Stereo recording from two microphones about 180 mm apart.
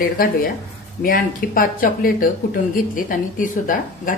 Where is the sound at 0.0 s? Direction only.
55° left (ahead or behind).